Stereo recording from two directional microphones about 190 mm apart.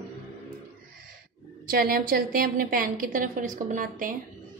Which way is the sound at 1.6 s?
50° right (ahead or behind).